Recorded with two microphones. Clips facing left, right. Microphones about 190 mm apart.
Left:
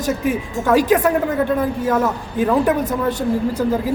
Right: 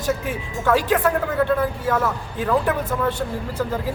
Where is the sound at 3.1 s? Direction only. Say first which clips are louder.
Left 6 dB; 40° left (ahead or behind).